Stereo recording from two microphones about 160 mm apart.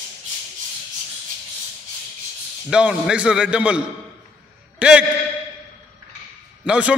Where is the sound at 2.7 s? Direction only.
5° right (ahead or behind).